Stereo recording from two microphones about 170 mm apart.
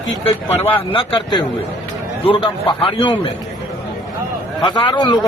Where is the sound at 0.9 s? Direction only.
30° left (ahead or behind).